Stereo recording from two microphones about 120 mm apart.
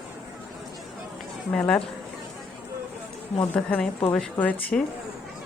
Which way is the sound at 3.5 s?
10° left (ahead or behind).